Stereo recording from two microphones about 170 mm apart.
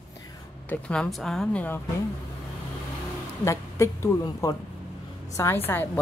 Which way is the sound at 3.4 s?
15° left (ahead or behind).